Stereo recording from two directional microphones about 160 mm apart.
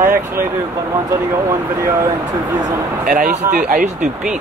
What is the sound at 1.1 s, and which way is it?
Speech, 20° right (ahead or behind).